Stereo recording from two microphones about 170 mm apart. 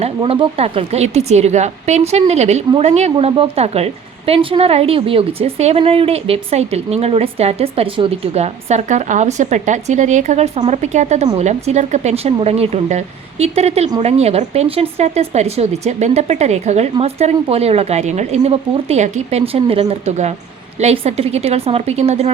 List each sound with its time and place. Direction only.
0.0 s a woman's voice: 30° right (ahead or behind)